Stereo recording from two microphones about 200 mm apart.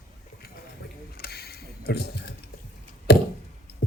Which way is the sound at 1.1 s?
50° left (ahead or behind).